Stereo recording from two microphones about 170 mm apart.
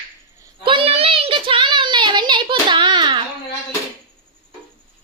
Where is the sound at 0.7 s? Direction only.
35° right (ahead or behind).